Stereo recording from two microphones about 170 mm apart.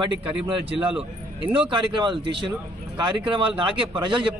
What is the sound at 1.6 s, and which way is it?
A man's voice, 30° right (ahead or behind).